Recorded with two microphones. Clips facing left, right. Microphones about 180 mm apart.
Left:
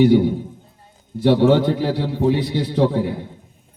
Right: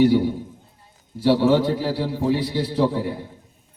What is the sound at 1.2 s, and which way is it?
A man's voice, 60° left (ahead or behind).